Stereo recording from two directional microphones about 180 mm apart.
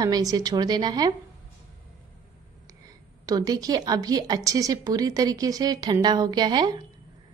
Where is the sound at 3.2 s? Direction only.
20° right (ahead or behind).